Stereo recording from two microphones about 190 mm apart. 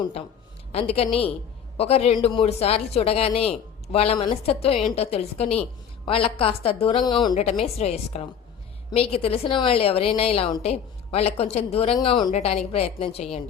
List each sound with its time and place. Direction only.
0.7 s a woman's voice: 30° left (ahead or behind)
7.6 s a woman's voice: 35° left (ahead or behind)